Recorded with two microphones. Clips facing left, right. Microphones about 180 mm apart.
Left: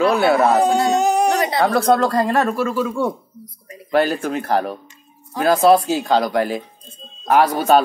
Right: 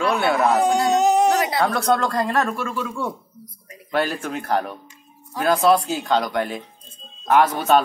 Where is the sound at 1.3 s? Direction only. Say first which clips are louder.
Left 3 dB; 5° right (ahead or behind).